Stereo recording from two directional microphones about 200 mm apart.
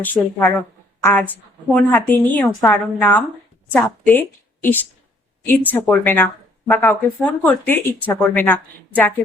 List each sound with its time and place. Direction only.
0.0 s a woman's voice: 10° left (ahead or behind)
5.6 s speech: 10° left (ahead or behind)